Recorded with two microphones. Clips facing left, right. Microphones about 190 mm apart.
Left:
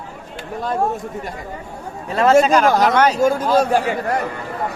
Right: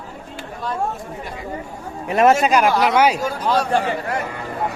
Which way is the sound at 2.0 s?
20° right (ahead or behind).